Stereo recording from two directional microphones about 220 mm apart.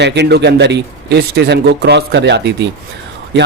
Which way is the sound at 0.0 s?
50° right (ahead or behind).